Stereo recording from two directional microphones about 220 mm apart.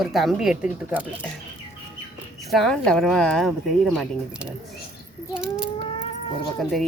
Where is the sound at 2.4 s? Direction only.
Centre (ahead or behind).